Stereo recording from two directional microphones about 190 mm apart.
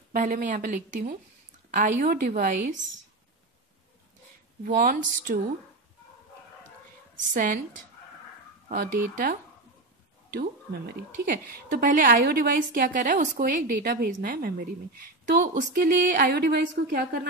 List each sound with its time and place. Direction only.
0.1 s a woman's voice: 45° right (ahead or behind)
4.6 s a woman's voice: 50° right (ahead or behind)
7.2 s a woman's voice: 45° right (ahead or behind)
9.1 s a woman's voice: 50° right (ahead or behind)